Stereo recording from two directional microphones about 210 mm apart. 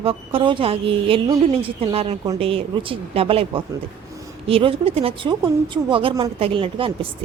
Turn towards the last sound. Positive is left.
turn(degrees=-25)  # may be behind; listen again after turning